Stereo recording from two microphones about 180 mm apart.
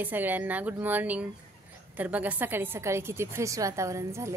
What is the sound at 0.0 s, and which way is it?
A woman's voice, 10° right (ahead or behind).